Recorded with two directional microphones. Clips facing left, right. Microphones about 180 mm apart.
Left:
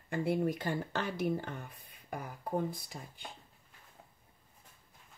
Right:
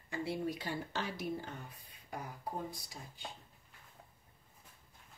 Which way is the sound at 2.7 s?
55° left (ahead or behind).